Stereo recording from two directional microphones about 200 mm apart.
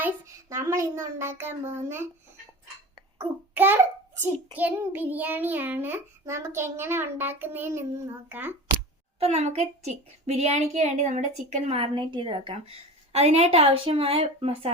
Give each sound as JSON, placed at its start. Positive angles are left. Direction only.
{"t": 0.0, "sound": "a woman's voice", "side_deg": -15}
{"t": 2.9, "sound": "a sound", "side_deg": -10}
{"t": 4.2, "sound": "a child's voice", "side_deg": -10}
{"t": 9.1, "sound": "a child's voice", "side_deg": -30}